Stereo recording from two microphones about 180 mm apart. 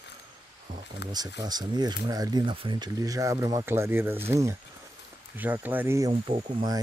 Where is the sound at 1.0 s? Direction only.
70° left (ahead or behind).